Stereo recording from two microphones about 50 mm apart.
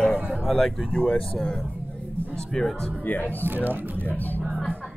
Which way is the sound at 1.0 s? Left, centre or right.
Left.